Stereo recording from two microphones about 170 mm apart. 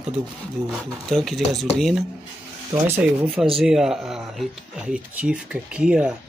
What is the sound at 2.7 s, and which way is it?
Speech, 10° right (ahead or behind).